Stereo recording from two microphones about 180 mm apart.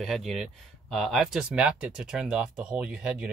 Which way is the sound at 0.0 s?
Centre (ahead or behind).